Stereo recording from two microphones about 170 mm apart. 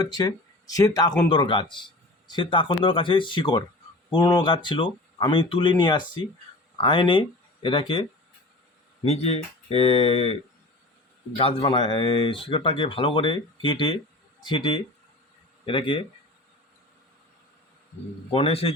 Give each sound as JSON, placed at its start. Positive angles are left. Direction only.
{"t": 0.0, "sound": "speech", "side_deg": 25}
{"t": 9.0, "sound": "speech", "side_deg": 35}
{"t": 11.3, "sound": "speech", "side_deg": 30}
{"t": 18.3, "sound": "speech", "side_deg": 35}